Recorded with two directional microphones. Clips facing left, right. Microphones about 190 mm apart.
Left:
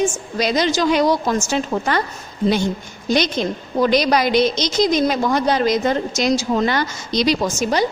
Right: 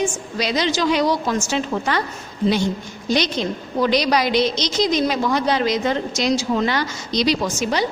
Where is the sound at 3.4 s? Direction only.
50° left (ahead or behind).